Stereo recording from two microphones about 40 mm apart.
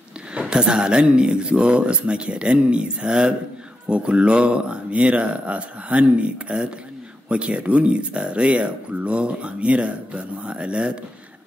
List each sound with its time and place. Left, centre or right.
0.3 s speech: right